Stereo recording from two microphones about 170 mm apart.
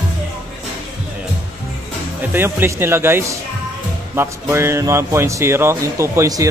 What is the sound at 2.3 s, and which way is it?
Speech, 15° right (ahead or behind).